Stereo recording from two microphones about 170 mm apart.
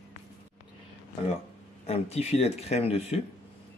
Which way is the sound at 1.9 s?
40° left (ahead or behind).